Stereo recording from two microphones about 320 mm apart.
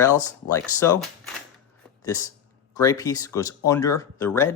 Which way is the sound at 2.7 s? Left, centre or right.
Centre.